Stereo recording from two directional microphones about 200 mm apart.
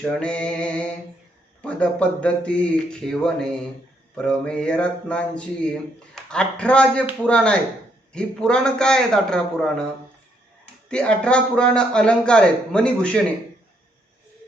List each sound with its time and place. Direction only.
0.0 s speech: 5° left (ahead or behind)
10.8 s speech: 5° left (ahead or behind)